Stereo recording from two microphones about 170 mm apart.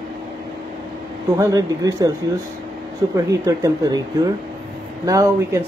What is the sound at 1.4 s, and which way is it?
Speech, 20° right (ahead or behind).